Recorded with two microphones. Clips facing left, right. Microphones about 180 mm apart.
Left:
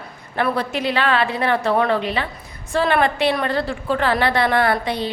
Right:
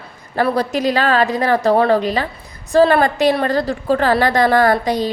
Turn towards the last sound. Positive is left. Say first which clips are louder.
# right 5 dB
turn(degrees=-40)  # may be behind; listen again after turning